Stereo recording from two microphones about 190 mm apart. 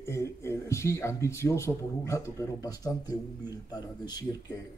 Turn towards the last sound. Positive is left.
turn(degrees=20)  # may be behind; listen again after turning